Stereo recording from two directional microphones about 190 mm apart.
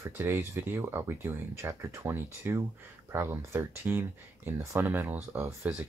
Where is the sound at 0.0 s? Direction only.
15° right (ahead or behind).